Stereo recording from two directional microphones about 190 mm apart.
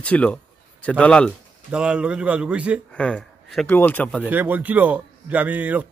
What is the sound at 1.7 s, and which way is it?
Speech, 5° right (ahead or behind).